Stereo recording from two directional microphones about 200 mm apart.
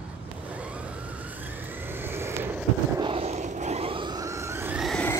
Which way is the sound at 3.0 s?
30° right (ahead or behind).